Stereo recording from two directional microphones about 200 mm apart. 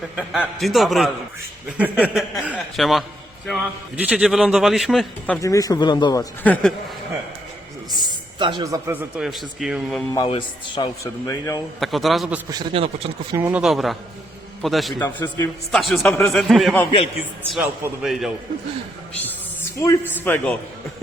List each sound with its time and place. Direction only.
0.2 s a man's voice: centre (ahead or behind); by 6.2 s 20° left (ahead or behind)
6.4 s a man's voice: 5° left (ahead or behind)
8.0 s speech: 20° right (ahead or behind); by 10.0 s 5° right (ahead or behind)
10.2 s a man's voice: 25° left (ahead or behind)
11.8 s a man's voice: centre (ahead or behind)
12.5 s a man's voice: 25° right (ahead or behind)
13.3 s a man's voice: 10° right (ahead or behind)
16.0 s a man's voice: 15° left (ahead or behind)
16.3 s a man's voice: centre (ahead or behind)
20.1 s a man's voice: 10° left (ahead or behind)